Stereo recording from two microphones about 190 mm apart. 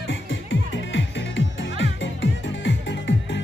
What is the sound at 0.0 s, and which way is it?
Music, 80° left.